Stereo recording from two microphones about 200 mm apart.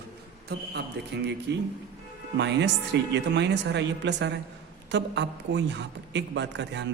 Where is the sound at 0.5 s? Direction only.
55° right (ahead or behind).